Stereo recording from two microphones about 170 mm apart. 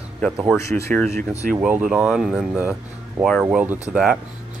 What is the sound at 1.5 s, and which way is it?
Speech, 5° right (ahead or behind).